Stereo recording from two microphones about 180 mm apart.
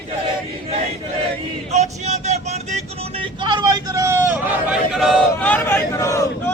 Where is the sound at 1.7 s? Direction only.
40° right (ahead or behind); by 4.8 s 15° right (ahead or behind).